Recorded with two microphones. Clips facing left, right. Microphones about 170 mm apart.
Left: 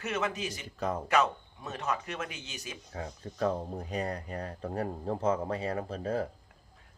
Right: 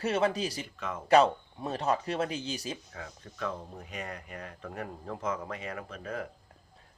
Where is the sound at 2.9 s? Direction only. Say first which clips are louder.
Left 5 dB; 35° left (ahead or behind).